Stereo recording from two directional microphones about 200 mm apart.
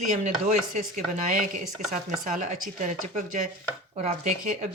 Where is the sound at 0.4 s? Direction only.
35° right (ahead or behind).